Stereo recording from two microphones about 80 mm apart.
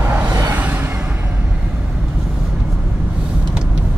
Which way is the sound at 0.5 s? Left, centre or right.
Centre.